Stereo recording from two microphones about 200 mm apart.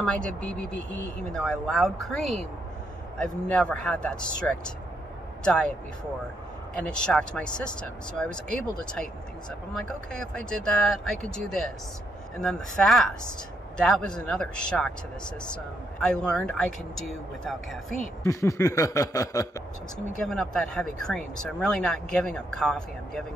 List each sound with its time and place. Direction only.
0.0 s speech: 5° left (ahead or behind)
6.8 s speech: 5° left (ahead or behind)
10.3 s speech: 5° left (ahead or behind)
18.2 s speech: 15° left (ahead or behind)
20.2 s speech: centre (ahead or behind)